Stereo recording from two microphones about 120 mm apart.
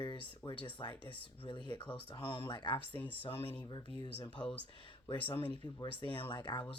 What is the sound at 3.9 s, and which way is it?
Speech, 40° left (ahead or behind).